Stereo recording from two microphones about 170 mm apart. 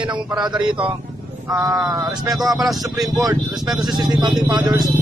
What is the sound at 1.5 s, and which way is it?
Speech, 20° right (ahead or behind).